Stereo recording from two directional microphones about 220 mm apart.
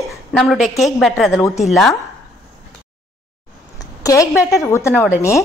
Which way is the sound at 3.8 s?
15° left (ahead or behind).